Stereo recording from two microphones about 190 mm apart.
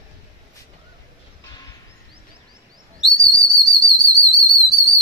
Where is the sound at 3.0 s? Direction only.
65° left (ahead or behind).